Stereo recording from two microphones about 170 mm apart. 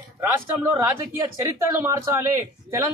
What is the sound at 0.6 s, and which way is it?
A man's voice, 20° right (ahead or behind).